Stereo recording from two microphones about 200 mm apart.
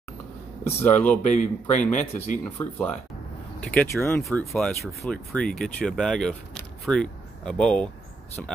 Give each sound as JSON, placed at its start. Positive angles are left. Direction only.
{"t": 0.7, "sound": "speech", "side_deg": 5}
{"t": 1.2, "sound": "speech", "side_deg": 35}
{"t": 2.4, "sound": "speech", "side_deg": 10}